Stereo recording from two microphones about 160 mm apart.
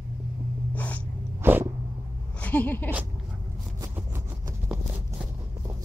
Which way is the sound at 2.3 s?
10° left (ahead or behind).